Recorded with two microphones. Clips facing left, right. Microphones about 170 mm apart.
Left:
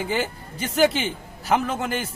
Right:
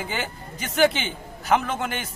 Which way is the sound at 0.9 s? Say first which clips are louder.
Left 4 dB; centre (ahead or behind).